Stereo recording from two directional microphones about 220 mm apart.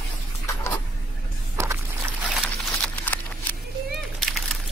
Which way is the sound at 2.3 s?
5° left (ahead or behind).